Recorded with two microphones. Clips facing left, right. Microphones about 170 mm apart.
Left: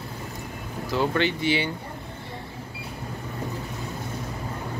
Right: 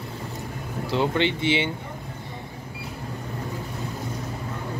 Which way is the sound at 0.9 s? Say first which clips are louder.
Right 1 dB; 20° right (ahead or behind).